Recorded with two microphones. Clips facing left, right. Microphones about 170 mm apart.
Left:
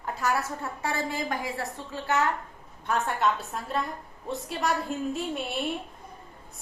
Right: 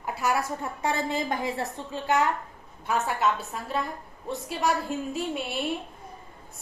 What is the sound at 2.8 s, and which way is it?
A woman's voice, 5° right (ahead or behind).